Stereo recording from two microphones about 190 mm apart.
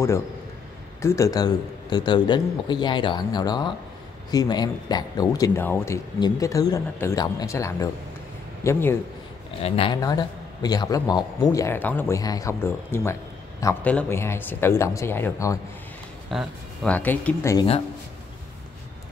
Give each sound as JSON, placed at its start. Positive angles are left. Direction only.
{"t": 1.0, "sound": "a man's voice", "side_deg": 15}
{"t": 9.6, "sound": "a man's voice", "side_deg": 30}
{"t": 16.3, "sound": "a man's voice", "side_deg": 0}